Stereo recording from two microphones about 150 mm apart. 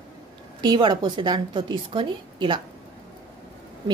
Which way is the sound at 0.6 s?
30° right (ahead or behind).